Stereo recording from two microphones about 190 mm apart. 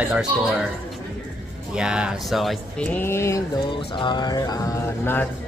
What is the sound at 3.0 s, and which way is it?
A man's voice, 15° left (ahead or behind).